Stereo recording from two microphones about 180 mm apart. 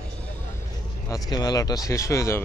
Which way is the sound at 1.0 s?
20° left (ahead or behind).